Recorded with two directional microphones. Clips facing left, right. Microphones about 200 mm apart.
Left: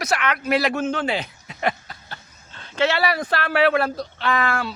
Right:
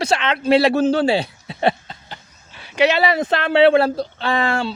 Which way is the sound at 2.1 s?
10° right (ahead or behind).